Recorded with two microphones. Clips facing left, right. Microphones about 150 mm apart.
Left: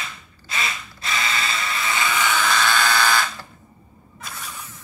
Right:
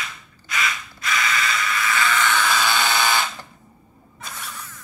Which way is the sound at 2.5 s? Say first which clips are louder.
Left 1 dB; 15° right (ahead or behind).